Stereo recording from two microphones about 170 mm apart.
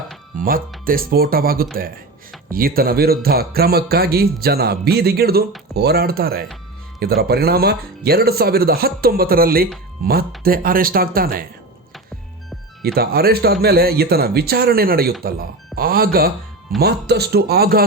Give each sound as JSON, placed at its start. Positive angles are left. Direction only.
{"t": 0.3, "sound": "music", "side_deg": -55}
{"t": 0.9, "sound": "speech", "side_deg": -60}
{"t": 12.8, "sound": "speech", "side_deg": -65}